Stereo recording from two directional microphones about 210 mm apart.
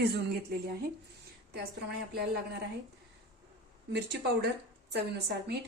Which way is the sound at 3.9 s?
50° right (ahead or behind).